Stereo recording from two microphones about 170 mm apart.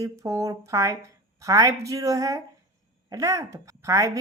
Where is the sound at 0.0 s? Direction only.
20° right (ahead or behind).